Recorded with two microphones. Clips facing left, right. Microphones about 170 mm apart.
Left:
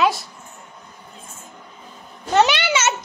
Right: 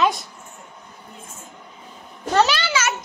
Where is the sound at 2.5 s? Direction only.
25° left (ahead or behind).